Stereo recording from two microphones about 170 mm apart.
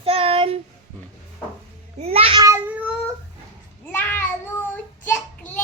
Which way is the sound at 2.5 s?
10° right (ahead or behind).